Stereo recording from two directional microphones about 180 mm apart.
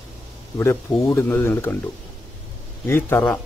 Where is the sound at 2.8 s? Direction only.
10° left (ahead or behind).